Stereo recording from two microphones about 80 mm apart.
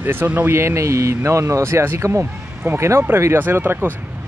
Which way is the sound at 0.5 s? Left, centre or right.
Right.